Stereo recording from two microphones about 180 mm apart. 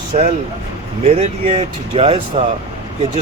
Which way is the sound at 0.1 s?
45° right (ahead or behind).